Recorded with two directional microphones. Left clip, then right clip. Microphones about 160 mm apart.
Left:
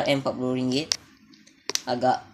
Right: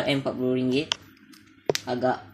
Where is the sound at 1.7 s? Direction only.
15° left (ahead or behind).